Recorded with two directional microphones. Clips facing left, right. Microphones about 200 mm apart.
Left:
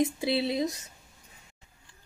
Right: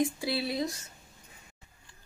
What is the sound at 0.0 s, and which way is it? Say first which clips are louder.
Speech: left 3 dB; 20° left (ahead or behind).